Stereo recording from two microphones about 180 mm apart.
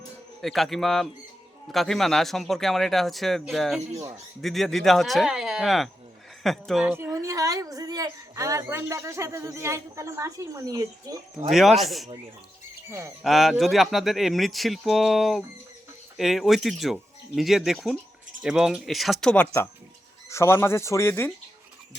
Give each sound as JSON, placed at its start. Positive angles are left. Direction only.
{"t": 0.4, "sound": "speech", "side_deg": 0}
{"t": 6.9, "sound": "a woman's voice", "side_deg": -15}
{"t": 11.5, "sound": "speech", "side_deg": 0}
{"t": 12.9, "sound": "a woman's voice", "side_deg": -15}
{"t": 13.2, "sound": "speech", "side_deg": 0}